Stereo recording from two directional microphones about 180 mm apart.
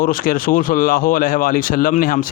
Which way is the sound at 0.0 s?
50° left (ahead or behind).